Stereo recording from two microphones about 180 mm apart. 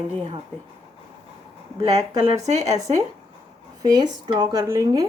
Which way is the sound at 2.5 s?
40° right (ahead or behind).